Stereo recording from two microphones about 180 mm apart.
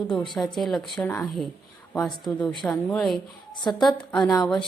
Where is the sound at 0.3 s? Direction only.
Centre (ahead or behind).